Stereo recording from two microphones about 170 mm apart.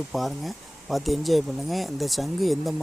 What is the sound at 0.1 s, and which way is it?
Speech, centre (ahead or behind).